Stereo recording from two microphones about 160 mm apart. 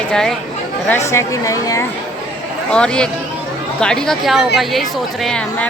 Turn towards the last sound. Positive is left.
turn(degrees=5)  # may be behind; listen again after turning